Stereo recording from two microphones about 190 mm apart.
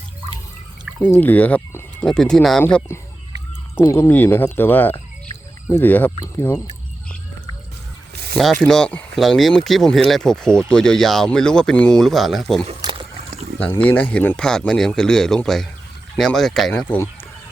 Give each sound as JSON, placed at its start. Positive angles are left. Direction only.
{"t": 1.0, "sound": "speech", "side_deg": 10}
{"t": 8.6, "sound": "speech", "side_deg": 5}
{"t": 12.6, "sound": "a sound", "side_deg": -25}
{"t": 13.6, "sound": "speech", "side_deg": 10}